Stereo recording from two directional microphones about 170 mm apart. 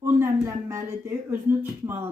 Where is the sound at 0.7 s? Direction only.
15° right (ahead or behind).